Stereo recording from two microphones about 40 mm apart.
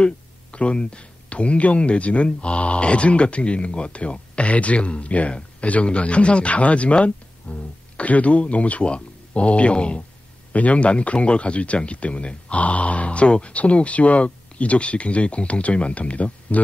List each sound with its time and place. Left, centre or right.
0.0 s speech: left